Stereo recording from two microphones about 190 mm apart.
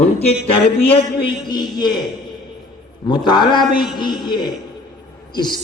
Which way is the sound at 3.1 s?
25° left (ahead or behind).